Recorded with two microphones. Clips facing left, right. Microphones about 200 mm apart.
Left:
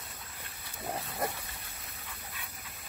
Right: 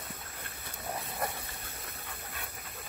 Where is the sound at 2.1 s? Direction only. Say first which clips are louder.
Right 3 dB; 55° right (ahead or behind).